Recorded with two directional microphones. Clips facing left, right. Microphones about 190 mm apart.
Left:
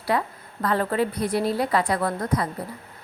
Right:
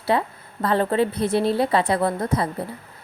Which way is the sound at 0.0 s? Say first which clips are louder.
Right 3 dB; 25° right (ahead or behind).